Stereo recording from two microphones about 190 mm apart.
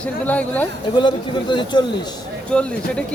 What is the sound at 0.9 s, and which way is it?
Speech, 25° left (ahead or behind).